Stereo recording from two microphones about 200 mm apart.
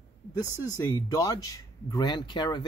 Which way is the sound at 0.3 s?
15° left (ahead or behind).